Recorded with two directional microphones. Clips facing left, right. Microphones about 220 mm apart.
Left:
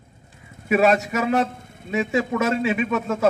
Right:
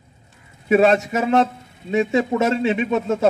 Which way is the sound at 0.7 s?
25° right (ahead or behind).